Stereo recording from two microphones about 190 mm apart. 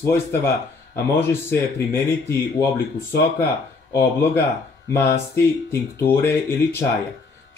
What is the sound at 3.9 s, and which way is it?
Speech, 15° left (ahead or behind).